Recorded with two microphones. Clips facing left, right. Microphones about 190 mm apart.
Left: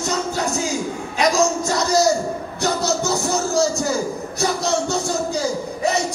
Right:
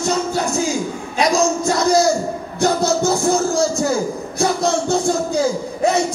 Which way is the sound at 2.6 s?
50° right (ahead or behind).